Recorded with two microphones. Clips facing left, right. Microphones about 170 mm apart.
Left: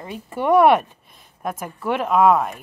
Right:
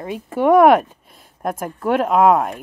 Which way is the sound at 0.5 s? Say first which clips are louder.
Right 2 dB; 50° right (ahead or behind).